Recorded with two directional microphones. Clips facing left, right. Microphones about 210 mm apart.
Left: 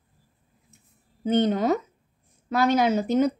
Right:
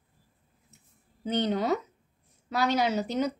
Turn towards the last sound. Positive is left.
turn(degrees=50)  # may be behind; listen again after turning